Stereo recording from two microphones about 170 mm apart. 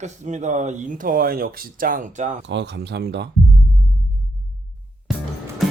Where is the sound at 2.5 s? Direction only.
85° right.